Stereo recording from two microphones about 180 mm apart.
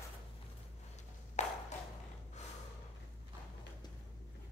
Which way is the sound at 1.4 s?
40° left (ahead or behind).